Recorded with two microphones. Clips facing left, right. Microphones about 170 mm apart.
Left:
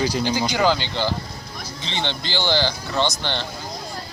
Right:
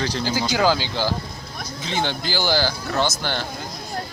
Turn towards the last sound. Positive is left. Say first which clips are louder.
# even
turn(degrees=-5)  # may be behind; listen again after turning